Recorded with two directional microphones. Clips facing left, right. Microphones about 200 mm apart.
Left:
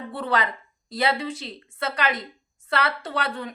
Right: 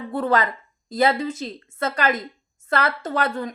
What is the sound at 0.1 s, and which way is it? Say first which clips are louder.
Speech: right 5 dB; 45° right (ahead or behind).